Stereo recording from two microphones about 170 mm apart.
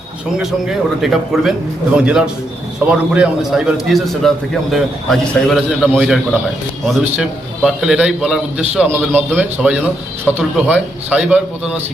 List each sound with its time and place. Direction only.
0.3 s a man's voice: centre (ahead or behind)